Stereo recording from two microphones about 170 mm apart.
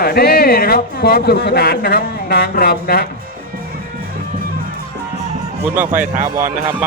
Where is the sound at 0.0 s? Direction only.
65° left (ahead or behind).